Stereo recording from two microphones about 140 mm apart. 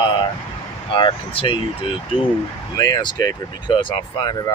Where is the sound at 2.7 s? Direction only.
25° left (ahead or behind).